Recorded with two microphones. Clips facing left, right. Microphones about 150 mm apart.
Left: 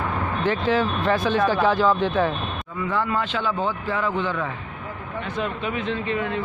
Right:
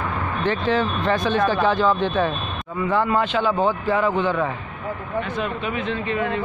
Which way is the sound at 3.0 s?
20° right (ahead or behind).